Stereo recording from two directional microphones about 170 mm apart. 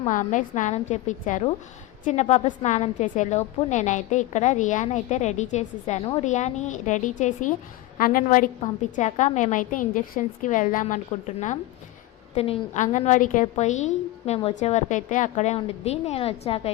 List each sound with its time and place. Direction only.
0.0 s a woman's voice: 45° left (ahead or behind)
12.8 s a woman's voice: 45° left (ahead or behind)